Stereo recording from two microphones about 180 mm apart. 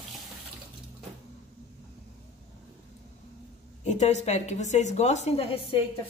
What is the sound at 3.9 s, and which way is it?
A woman's voice, 40° left (ahead or behind).